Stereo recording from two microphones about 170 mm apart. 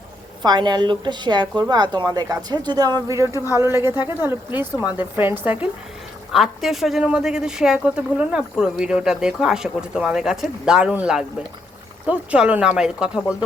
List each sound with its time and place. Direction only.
0.4 s a woman's voice: 25° right (ahead or behind); by 13.3 s 5° right (ahead or behind)